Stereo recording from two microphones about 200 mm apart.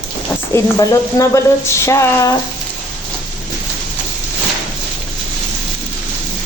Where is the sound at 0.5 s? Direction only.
15° left (ahead or behind).